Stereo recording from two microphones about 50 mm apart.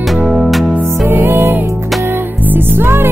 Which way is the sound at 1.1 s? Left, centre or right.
Right.